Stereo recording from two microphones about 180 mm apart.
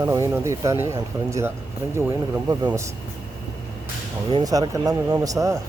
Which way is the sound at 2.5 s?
20° right (ahead or behind).